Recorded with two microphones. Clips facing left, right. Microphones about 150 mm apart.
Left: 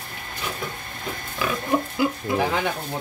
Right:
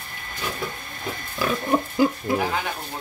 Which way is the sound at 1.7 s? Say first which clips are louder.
Right 2 dB; 25° right (ahead or behind).